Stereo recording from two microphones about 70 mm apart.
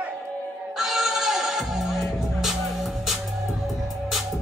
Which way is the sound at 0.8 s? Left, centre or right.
Centre.